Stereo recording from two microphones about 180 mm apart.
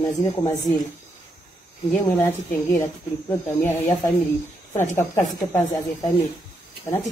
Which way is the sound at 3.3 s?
15° left (ahead or behind).